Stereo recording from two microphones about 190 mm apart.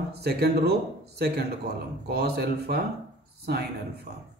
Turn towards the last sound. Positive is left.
turn(degrees=-55)  # may be behind; listen again after turning